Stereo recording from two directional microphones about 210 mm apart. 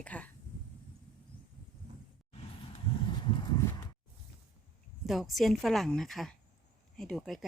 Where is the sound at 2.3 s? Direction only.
30° left (ahead or behind).